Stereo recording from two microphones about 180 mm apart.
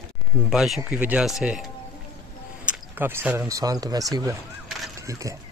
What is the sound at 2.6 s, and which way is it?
Speech, 10° right (ahead or behind).